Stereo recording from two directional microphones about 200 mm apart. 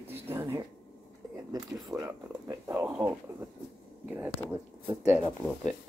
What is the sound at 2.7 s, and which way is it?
Speech, 5° right (ahead or behind).